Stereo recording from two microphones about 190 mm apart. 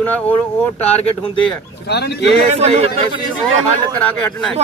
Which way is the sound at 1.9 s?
60° left (ahead or behind).